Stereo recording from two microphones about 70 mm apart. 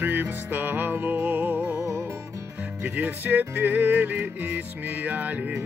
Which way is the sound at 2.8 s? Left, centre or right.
Right.